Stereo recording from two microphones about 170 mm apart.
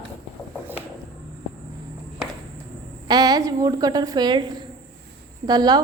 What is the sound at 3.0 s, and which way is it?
A woman's voice, 25° right (ahead or behind).